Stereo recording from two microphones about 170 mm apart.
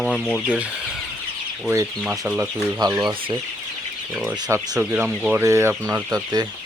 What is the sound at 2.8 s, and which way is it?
Speech, 20° right (ahead or behind).